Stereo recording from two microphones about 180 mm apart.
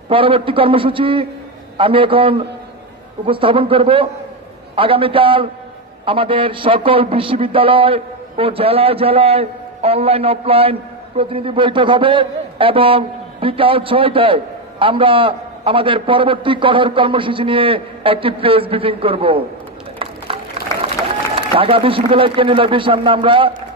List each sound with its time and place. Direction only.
0.1 s a man's voice: 30° right (ahead or behind)
20.7 s crowd: 15° left (ahead or behind)
21.5 s a man's voice: 30° right (ahead or behind)